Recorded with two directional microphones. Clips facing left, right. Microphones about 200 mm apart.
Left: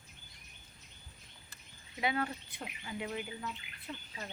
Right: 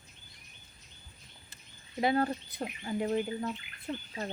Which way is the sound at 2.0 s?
40° right (ahead or behind).